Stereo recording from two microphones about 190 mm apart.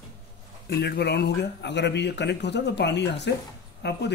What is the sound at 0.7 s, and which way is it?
Speech, 60° left (ahead or behind).